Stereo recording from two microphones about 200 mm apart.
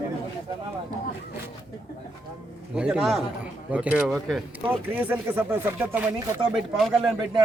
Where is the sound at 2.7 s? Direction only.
5° right (ahead or behind).